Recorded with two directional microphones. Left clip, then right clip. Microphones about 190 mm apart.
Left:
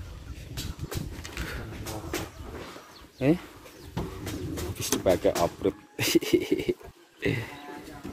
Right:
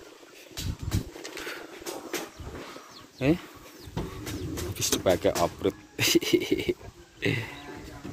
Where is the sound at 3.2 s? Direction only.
10° left (ahead or behind).